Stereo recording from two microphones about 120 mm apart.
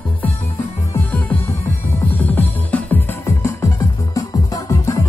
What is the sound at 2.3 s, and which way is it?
Music, 15° left (ahead or behind).